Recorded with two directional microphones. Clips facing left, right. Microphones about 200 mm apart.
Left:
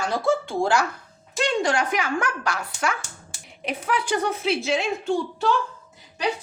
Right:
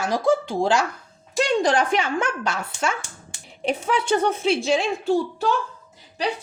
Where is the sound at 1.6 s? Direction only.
30° right (ahead or behind).